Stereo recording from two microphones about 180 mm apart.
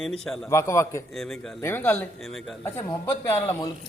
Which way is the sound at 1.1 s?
Centre (ahead or behind).